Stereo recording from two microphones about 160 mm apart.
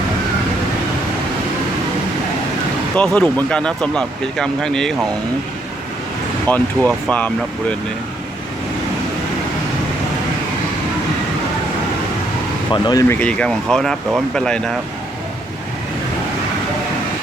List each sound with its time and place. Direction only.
2.9 s speech: 10° left (ahead or behind)
6.5 s speech: 10° left (ahead or behind)
12.7 s speech: 25° left (ahead or behind)
13.1 s speech: 5° left (ahead or behind)